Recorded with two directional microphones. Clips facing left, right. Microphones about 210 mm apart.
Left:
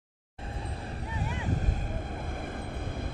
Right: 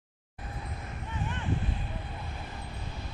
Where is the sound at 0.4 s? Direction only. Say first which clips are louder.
Left 3 dB; 30° left (ahead or behind).